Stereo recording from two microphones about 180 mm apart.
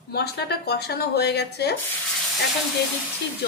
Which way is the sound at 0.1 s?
65° left (ahead or behind).